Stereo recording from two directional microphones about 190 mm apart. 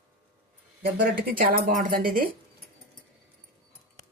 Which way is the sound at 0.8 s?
55° right (ahead or behind).